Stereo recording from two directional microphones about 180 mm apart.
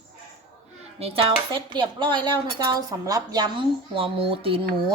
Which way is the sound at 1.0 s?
30° right (ahead or behind).